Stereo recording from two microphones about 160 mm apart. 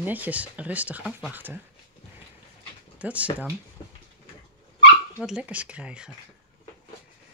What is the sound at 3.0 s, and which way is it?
Speech, 10° right (ahead or behind).